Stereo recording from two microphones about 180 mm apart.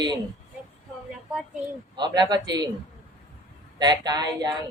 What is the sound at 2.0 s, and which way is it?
Speech, 25° right (ahead or behind).